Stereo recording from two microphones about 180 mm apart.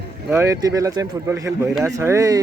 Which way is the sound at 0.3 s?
15° right (ahead or behind).